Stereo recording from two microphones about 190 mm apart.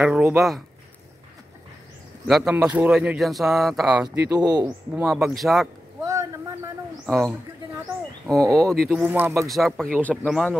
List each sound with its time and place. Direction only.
0.0 s speech: centre (ahead or behind)
2.2 s speech: 5° right (ahead or behind)
4.4 s speech: 20° right (ahead or behind)
5.0 s speech: centre (ahead or behind)
6.0 s a sound: 15° right (ahead or behind)
7.1 s speech: centre (ahead or behind)
8.4 s speech: 15° right (ahead or behind)
8.8 s speech: 5° right (ahead or behind)
9.5 s speech: centre (ahead or behind)